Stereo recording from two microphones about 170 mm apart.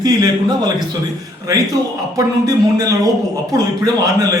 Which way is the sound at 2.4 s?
20° right (ahead or behind).